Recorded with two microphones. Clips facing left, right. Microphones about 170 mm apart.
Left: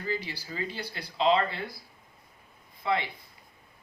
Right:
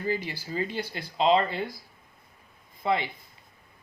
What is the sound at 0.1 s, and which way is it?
Speech, 50° right (ahead or behind).